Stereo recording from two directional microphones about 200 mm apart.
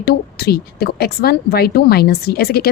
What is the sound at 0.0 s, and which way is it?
A woman's voice, 50° left (ahead or behind).